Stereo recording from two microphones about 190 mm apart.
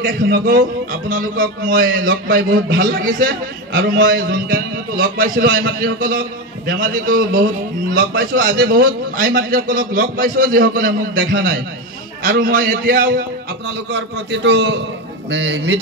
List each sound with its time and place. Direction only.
0.1 s a man's voice: 50° right (ahead or behind)
13.8 s a man's voice: 65° right (ahead or behind)